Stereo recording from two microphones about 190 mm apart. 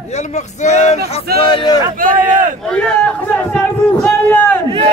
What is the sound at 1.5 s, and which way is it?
Speech, 20° left (ahead or behind).